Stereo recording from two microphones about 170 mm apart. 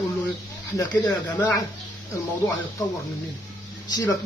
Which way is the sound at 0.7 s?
20° left (ahead or behind).